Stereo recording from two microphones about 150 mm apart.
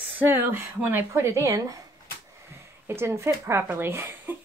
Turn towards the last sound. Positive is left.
turn(degrees=-15)  # may be behind; listen again after turning